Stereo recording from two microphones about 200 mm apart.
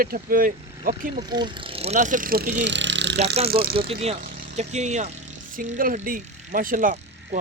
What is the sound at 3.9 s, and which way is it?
Speech, 30° right (ahead or behind).